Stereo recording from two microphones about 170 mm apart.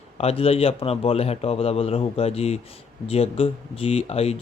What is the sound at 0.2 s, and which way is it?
Speech, 35° left (ahead or behind).